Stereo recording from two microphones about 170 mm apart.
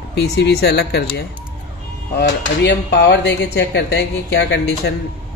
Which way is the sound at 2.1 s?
90° left.